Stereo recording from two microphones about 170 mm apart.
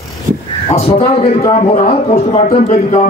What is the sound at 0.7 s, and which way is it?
A man's voice, 35° left (ahead or behind).